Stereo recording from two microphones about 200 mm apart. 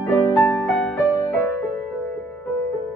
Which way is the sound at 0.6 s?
Centre (ahead or behind).